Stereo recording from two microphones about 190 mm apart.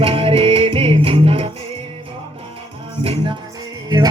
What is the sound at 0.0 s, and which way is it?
Music, 30° right (ahead or behind).